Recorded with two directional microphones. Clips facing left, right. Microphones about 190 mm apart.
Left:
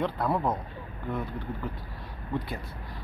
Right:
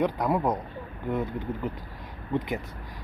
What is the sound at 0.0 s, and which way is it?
Speech, 15° right (ahead or behind).